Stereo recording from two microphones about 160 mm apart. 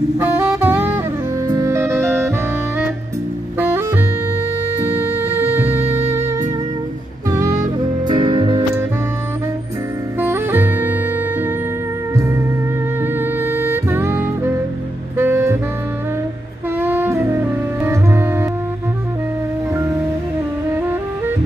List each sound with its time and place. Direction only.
0.2 s saxophone: 10° right (ahead or behind)
1.5 s music: 20° right (ahead or behind)
3.5 s music: 15° right (ahead or behind)
7.2 s music: 20° right (ahead or behind)
8.1 s music: 30° right (ahead or behind)
10.2 s music: 15° right (ahead or behind)
13.0 s music: 15° right (ahead or behind)
15.1 s saxophone: 15° right (ahead or behind)
16.8 s saxophone: 10° right (ahead or behind)
17.8 s music: 15° right (ahead or behind)